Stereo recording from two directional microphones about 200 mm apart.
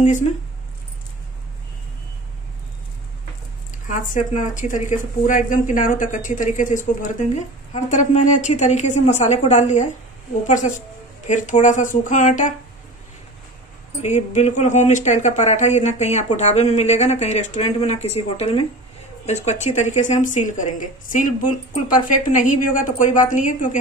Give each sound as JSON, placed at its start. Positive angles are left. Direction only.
{"t": 0.0, "sound": "speech", "side_deg": 35}
{"t": 3.8, "sound": "speech", "side_deg": 40}
{"t": 14.0, "sound": "speech", "side_deg": 35}